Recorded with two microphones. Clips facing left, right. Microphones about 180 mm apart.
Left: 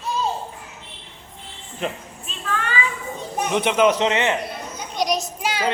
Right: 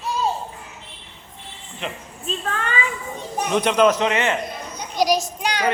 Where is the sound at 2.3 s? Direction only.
35° right (ahead or behind).